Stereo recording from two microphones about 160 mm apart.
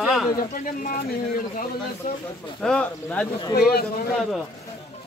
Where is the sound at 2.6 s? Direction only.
5° left (ahead or behind).